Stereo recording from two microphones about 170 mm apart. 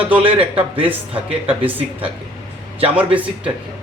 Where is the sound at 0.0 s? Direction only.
30° right (ahead or behind).